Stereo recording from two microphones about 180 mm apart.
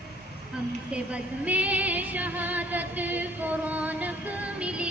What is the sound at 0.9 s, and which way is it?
Female singing, 5° right (ahead or behind).